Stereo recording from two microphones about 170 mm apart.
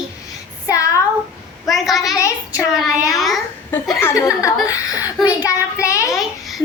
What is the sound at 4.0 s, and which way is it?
Speech, 15° left (ahead or behind).